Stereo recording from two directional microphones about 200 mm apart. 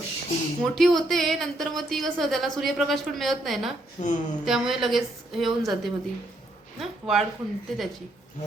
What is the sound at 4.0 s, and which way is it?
Speech, 40° left (ahead or behind).